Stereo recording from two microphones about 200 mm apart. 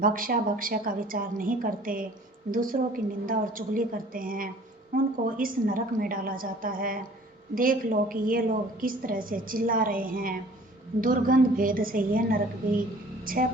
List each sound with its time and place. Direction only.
0.0 s a woman's voice: 45° right (ahead or behind)